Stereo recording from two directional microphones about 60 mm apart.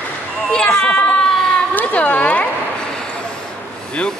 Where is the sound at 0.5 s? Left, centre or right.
Centre.